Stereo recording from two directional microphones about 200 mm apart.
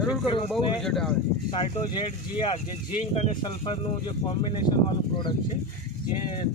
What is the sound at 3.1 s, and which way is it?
Speech, 30° left (ahead or behind).